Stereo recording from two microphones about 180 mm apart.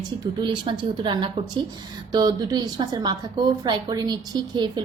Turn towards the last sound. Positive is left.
turn(degrees=-25)  # may be behind; listen again after turning